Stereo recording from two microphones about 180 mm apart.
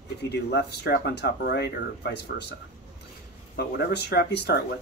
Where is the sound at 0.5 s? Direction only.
70° left (ahead or behind).